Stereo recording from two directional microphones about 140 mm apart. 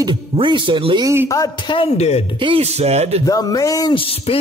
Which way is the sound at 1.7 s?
50° left (ahead or behind).